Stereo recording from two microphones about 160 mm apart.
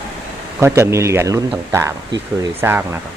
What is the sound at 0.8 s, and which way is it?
Speech, 15° right (ahead or behind).